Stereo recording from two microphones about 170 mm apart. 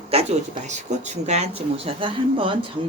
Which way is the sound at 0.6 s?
45° right (ahead or behind).